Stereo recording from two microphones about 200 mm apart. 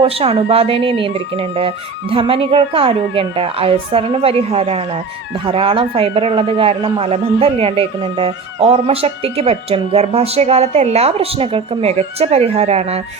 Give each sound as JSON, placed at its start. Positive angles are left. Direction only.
{"t": 0.0, "sound": "a man's voice", "side_deg": -30}